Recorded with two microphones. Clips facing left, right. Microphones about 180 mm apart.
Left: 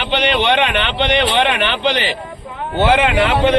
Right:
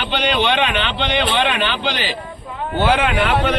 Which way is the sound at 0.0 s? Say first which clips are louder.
Left 2 dB; 60° left (ahead or behind).